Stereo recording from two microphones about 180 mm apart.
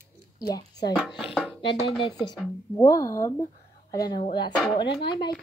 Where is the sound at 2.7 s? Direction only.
20° left (ahead or behind).